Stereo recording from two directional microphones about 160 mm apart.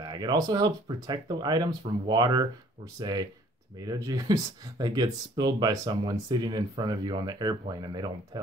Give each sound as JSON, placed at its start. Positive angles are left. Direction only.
{"t": 0.0, "sound": "speech", "side_deg": -25}